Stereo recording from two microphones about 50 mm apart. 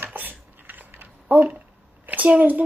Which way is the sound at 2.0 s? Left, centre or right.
Right.